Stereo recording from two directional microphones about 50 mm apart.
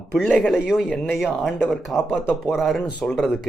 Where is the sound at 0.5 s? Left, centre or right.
Centre.